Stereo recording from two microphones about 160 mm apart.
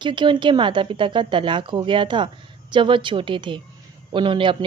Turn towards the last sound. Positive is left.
turn(degrees=-30)  # may be behind; listen again after turning